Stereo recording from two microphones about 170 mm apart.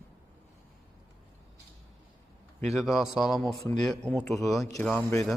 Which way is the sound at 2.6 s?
Centre (ahead or behind).